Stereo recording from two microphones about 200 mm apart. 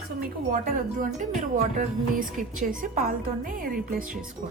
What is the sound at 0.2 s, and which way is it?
Speech, 45° right (ahead or behind).